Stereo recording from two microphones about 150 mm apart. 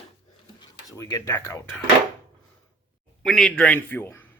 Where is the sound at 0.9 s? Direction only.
20° left (ahead or behind).